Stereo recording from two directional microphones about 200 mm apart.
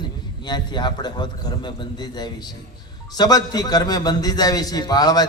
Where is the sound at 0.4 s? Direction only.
20° left (ahead or behind).